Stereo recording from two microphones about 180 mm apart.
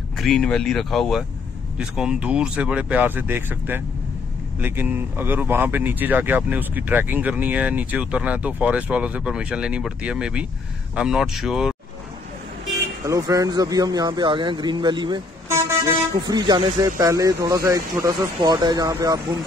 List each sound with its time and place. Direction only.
0.2 s speech: centre (ahead or behind)
13.0 s a man's voice: 20° right (ahead or behind)